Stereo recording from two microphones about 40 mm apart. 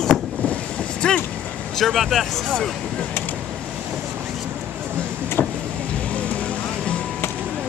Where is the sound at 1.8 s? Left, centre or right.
Centre.